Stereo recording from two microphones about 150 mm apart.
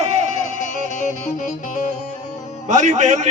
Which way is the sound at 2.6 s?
55° right (ahead or behind).